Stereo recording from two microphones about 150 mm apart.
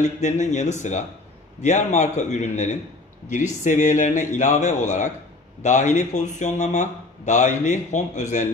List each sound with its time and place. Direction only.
0.2 s a man's voice: 55° left (ahead or behind)